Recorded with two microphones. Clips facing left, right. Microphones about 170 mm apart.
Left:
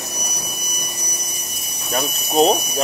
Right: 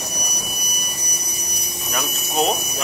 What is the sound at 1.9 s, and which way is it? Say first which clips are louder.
Speech: left 5 dB; 35° left (ahead or behind).